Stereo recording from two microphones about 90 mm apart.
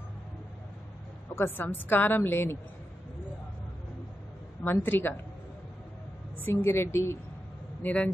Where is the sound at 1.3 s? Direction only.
25° left (ahead or behind).